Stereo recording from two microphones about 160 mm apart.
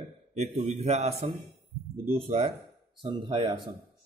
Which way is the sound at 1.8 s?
70° right (ahead or behind).